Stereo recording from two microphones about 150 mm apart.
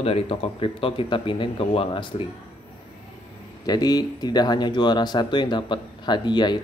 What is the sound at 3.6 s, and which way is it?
Speech, 25° left (ahead or behind).